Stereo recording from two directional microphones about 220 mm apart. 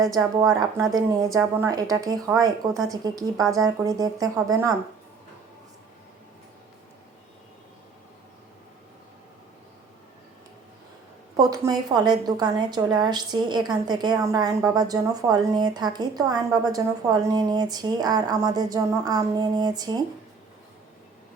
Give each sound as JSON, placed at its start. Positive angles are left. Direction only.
{"t": 0.2, "sound": "a woman's voice", "side_deg": -15}
{"t": 11.3, "sound": "a woman's voice", "side_deg": -15}